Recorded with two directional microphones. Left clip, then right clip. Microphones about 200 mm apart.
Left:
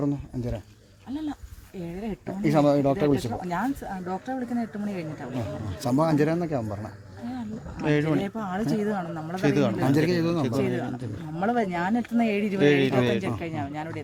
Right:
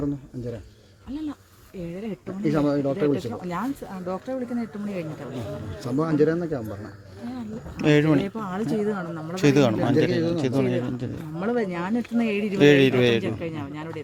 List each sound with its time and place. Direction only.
1.1 s speech: centre (ahead or behind)
2.4 s speech: 55° left (ahead or behind)
3.5 s speech: centre (ahead or behind)
5.8 s speech: 55° left (ahead or behind)
7.8 s a man's voice: 30° right (ahead or behind)
8.2 s speech: 5° left (ahead or behind)
9.3 s a man's voice: 30° right (ahead or behind)
10.1 s speech: 60° left (ahead or behind)
10.4 s a man's voice: 25° right (ahead or behind)
11.3 s speech: 10° left (ahead or behind)
12.5 s a man's voice: 30° right (ahead or behind)
13.2 s speech: 5° left (ahead or behind)